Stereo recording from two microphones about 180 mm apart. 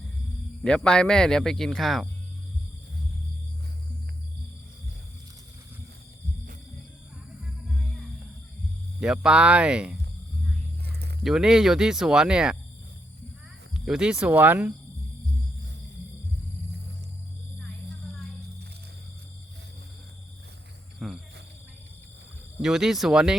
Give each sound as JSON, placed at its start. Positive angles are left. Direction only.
{"t": 0.6, "sound": "speech", "side_deg": 5}
{"t": 9.0, "sound": "speech", "side_deg": -5}
{"t": 11.2, "sound": "speech", "side_deg": -5}
{"t": 13.7, "sound": "speech", "side_deg": -5}
{"t": 21.0, "sound": "cricket", "side_deg": 0}
{"t": 22.6, "sound": "speech", "side_deg": 0}